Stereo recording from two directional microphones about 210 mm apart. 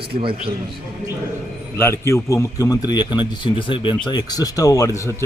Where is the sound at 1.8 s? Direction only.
10° left (ahead or behind).